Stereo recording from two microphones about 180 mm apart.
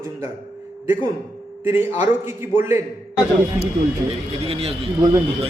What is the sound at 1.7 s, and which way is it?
Speech, 10° right (ahead or behind).